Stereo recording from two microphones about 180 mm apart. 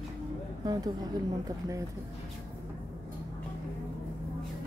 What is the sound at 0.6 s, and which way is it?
Speech, 20° right (ahead or behind).